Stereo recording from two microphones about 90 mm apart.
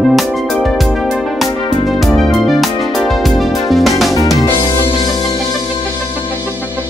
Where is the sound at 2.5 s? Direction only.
Centre (ahead or behind).